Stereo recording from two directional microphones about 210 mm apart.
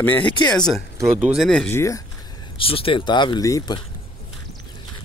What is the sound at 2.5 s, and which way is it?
Speech, 25° left (ahead or behind).